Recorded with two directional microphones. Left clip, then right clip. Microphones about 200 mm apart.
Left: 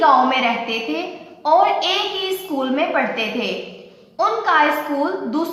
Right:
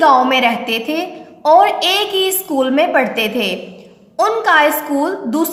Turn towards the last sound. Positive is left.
turn(degrees=-55)  # may be behind; listen again after turning